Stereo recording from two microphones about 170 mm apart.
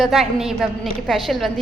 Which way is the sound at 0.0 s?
Centre (ahead or behind).